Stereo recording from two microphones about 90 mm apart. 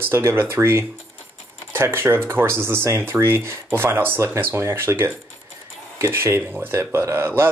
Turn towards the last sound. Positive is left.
turn(degrees=-25)  # may be behind; listen again after turning